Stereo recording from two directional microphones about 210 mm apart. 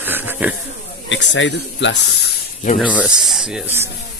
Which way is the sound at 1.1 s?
60° left (ahead or behind).